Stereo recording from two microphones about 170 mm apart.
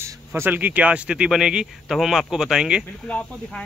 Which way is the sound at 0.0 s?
15° right (ahead or behind).